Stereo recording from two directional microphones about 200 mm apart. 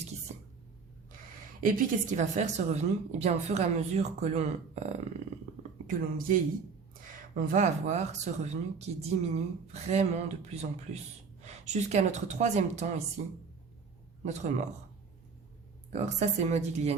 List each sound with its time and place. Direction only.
1.6 s a woman's voice: 40° right (ahead or behind)
5.9 s a woman's voice: 45° right (ahead or behind)
14.3 s a woman's voice: 35° right (ahead or behind)
15.9 s a woman's voice: 35° right (ahead or behind)